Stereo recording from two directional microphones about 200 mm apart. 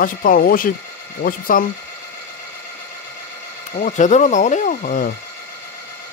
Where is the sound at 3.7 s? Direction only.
40° left (ahead or behind).